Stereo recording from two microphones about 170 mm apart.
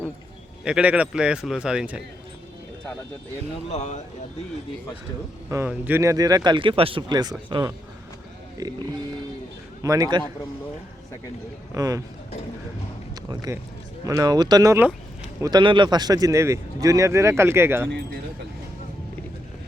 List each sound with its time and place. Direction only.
0.6 s a man's voice: 5° right (ahead or behind)
3.7 s speech: 40° left (ahead or behind)
5.5 s speech: 15° right (ahead or behind)
11.7 s speech: 20° right (ahead or behind)
13.3 s speech: 20° right (ahead or behind)
14.8 s a sound: 10° right (ahead or behind)
15.4 s speech: 25° right (ahead or behind)